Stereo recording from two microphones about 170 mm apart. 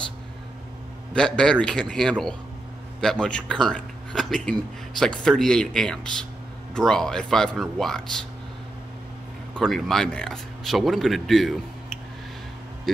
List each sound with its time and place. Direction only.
1.1 s speech: 5° left (ahead or behind)
9.5 s speech: 5° left (ahead or behind)
12.9 s vehicle: centre (ahead or behind)